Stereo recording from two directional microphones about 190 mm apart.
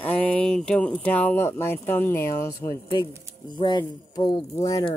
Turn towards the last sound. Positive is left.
turn(degrees=20)  # may be behind; listen again after turning